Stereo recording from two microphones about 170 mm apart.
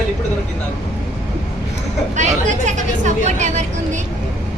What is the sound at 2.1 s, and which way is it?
Speech, 45° right (ahead or behind).